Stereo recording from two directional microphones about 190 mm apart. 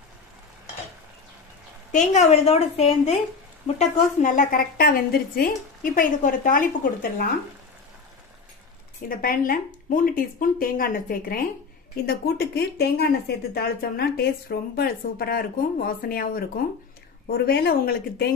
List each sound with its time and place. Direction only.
1.9 s a woman's voice: 40° left (ahead or behind)
9.1 s speech: 50° left (ahead or behind)